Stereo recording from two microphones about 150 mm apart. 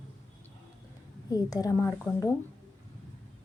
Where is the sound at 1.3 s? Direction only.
25° left (ahead or behind).